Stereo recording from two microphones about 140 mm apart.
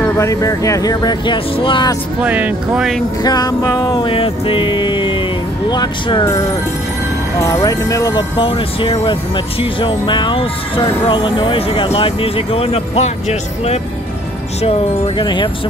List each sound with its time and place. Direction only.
0.2 s speech: 25° left (ahead or behind)
2.2 s speech: 10° right (ahead or behind)
3.3 s speech: 30° left (ahead or behind)
7.3 s speech: 20° left (ahead or behind)
8.4 s speech: 40° left (ahead or behind)
15.1 s speech: 35° left (ahead or behind)